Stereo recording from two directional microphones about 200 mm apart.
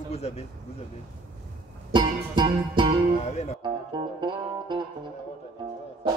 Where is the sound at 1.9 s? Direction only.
25° right (ahead or behind).